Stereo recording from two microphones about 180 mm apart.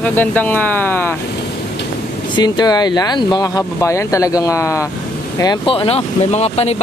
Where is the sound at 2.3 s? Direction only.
25° left (ahead or behind).